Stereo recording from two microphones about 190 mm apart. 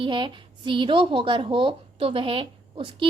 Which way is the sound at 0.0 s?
25° right (ahead or behind).